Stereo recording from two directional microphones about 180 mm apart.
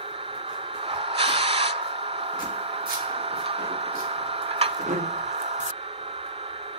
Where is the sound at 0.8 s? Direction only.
30° right (ahead or behind).